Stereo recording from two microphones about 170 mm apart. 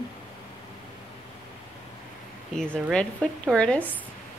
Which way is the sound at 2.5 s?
5° left (ahead or behind).